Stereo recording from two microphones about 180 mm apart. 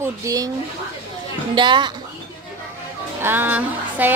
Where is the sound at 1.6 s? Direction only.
25° right (ahead or behind).